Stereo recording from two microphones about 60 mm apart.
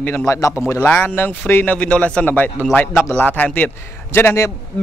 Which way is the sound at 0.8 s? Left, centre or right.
Left.